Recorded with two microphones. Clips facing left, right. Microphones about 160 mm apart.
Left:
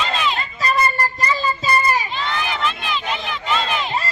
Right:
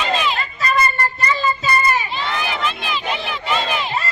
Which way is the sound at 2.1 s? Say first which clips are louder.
Right 1 dB; 5° right (ahead or behind).